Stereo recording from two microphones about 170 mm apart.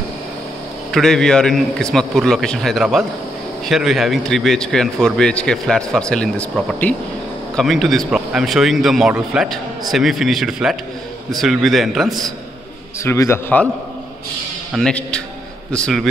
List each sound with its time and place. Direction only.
0.9 s a man's voice: 5° left (ahead or behind)
13.0 s a man's voice: 15° left (ahead or behind)
14.7 s a man's voice: 5° left (ahead or behind)